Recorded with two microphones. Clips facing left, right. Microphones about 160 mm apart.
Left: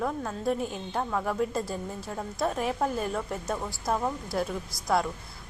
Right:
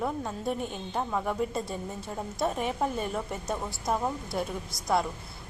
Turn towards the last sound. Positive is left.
turn(degrees=0)  # may be behind; listen again after turning